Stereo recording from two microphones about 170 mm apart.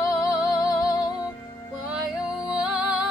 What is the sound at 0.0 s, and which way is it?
Music, 20° left (ahead or behind).